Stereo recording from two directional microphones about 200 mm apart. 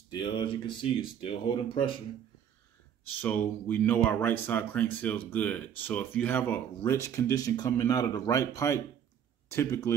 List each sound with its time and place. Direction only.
0.1 s speech: 25° left (ahead or behind)
3.2 s speech: 10° left (ahead or behind)